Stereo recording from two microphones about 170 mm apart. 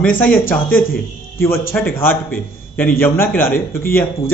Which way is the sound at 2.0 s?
10° left (ahead or behind).